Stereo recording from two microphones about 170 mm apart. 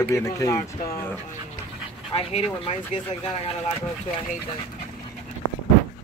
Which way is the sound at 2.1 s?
35° left (ahead or behind).